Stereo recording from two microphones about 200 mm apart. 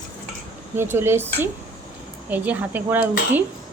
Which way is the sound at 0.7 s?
10° right (ahead or behind).